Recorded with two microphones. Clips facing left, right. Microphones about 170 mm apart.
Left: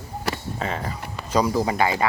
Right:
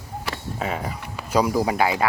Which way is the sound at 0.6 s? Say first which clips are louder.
Right 1 dB; 5° right (ahead or behind).